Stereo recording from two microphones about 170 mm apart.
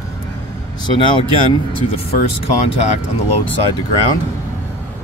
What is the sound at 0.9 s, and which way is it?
Speech, 30° left (ahead or behind).